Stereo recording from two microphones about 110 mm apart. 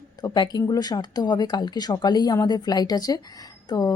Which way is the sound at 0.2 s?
40° left (ahead or behind).